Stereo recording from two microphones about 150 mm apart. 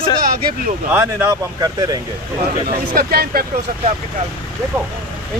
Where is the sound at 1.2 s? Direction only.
25° right (ahead or behind).